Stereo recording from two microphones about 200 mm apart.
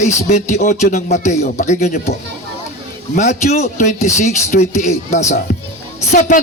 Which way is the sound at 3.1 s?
35° left (ahead or behind).